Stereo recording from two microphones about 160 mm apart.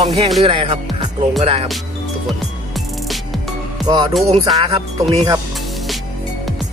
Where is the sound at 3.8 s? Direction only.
25° right (ahead or behind).